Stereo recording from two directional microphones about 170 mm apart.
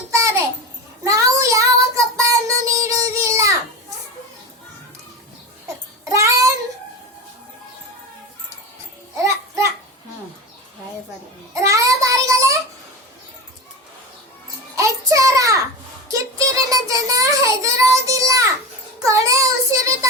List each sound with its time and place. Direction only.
0.1 s a sound: 15° right (ahead or behind)
1.0 s child singing: 20° right (ahead or behind)
5.6 s babbling: 20° right (ahead or behind)
11.6 s child singing: 20° right (ahead or behind)
14.8 s a sound: 20° right (ahead or behind)
16.1 s child singing: 20° right (ahead or behind)